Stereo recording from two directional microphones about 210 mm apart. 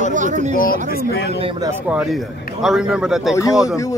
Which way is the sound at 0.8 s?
45° left (ahead or behind).